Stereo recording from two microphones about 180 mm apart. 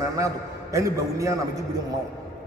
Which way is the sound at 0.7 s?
15° right (ahead or behind).